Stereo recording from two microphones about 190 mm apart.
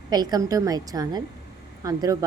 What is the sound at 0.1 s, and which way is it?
A woman's voice, 20° right (ahead or behind).